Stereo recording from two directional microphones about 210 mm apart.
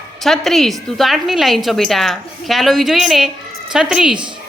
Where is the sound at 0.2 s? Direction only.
Centre (ahead or behind).